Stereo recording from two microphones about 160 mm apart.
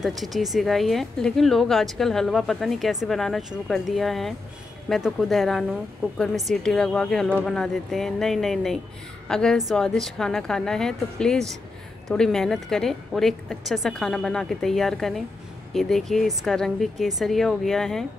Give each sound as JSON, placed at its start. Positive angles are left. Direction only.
{"t": 0.0, "sound": "a woman's voice", "side_deg": 0}